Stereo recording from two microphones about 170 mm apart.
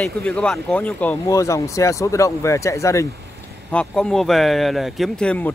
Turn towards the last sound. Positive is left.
turn(degrees=10)  # may be behind; listen again after turning